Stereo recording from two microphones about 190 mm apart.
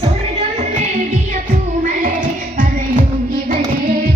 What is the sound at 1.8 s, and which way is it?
Music, 45° right (ahead or behind).